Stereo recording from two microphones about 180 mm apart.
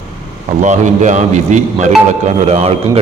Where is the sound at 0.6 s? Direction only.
40° right (ahead or behind).